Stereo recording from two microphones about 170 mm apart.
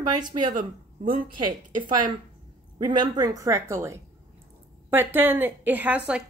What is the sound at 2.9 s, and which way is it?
A woman's voice, 25° right (ahead or behind).